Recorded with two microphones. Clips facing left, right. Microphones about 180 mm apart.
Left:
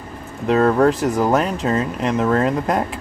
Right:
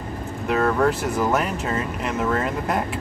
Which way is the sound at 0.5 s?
35° left (ahead or behind).